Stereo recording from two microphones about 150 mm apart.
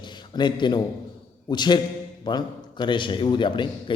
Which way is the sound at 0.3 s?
30° left (ahead or behind).